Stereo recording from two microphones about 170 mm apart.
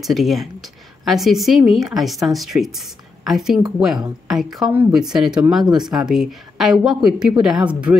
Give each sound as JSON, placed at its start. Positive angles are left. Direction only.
{"t": 0.0, "sound": "speech", "side_deg": 0}